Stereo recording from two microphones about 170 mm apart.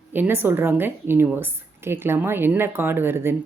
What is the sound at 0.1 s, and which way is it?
Speech, 10° right (ahead or behind).